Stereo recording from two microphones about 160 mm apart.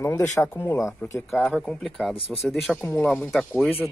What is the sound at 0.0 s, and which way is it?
Speech, 15° left (ahead or behind).